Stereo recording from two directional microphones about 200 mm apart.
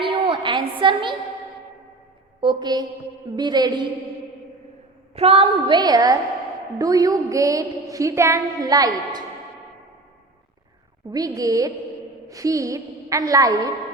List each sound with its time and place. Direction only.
0.0 s a sound: 25° right (ahead or behind)
2.4 s a woman's voice: 25° right (ahead or behind)
5.1 s a woman's voice: 30° right (ahead or behind)
11.1 s a woman's voice: 20° right (ahead or behind)